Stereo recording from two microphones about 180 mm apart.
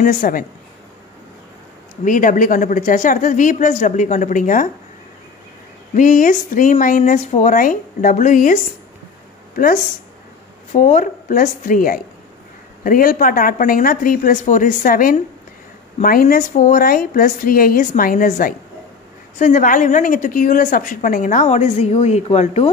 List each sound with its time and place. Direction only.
0.0 s a woman's voice: 50° left (ahead or behind)
2.0 s a woman's voice: 50° left (ahead or behind)
5.9 s a woman's voice: 50° left (ahead or behind)
10.7 s a woman's voice: 45° left (ahead or behind)